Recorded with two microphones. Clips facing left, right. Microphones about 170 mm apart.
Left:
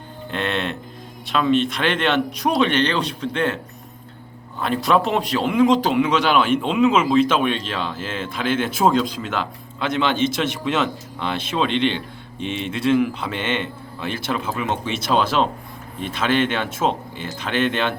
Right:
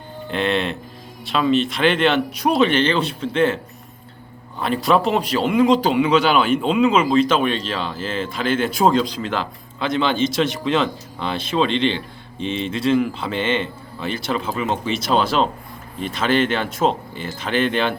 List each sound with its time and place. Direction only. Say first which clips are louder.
0.3 s speech: right 3 dB; centre (ahead or behind)
4.6 s speech: right 1 dB; centre (ahead or behind)
11.9 s speech: even; 55° left (ahead or behind)
12.7 s speech: left 1 dB; 5° left (ahead or behind)